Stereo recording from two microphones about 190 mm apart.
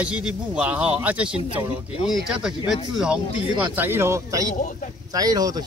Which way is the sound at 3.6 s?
10° right (ahead or behind).